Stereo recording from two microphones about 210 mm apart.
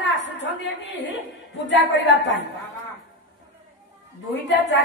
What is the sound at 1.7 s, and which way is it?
Speech, 60° left (ahead or behind).